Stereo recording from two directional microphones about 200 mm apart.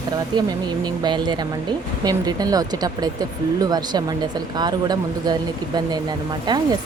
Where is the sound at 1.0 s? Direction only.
20° right (ahead or behind).